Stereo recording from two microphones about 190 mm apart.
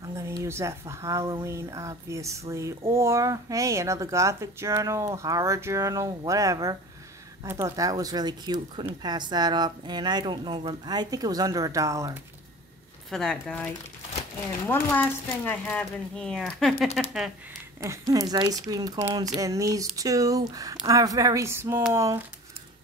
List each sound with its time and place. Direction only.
0.0 s a woman's voice: 15° right (ahead or behind)
13.1 s speech: 5° left (ahead or behind)
14.7 s speech: 10° left (ahead or behind)
17.7 s a woman's voice: 15° right (ahead or behind)